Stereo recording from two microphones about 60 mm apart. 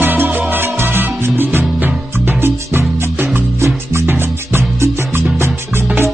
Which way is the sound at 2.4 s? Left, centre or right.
Right.